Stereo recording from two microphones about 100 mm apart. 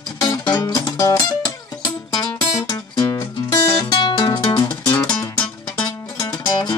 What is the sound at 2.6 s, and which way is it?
Music, 45° left (ahead or behind).